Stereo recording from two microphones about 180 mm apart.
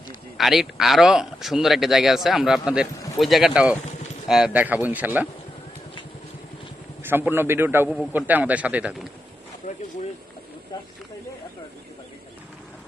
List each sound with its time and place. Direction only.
0.3 s a man's voice: centre (ahead or behind)
7.0 s a man's voice: 10° right (ahead or behind)
9.6 s a sound: 45° left (ahead or behind)